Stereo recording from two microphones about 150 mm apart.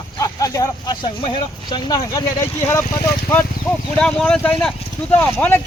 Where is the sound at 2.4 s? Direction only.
15° left (ahead or behind).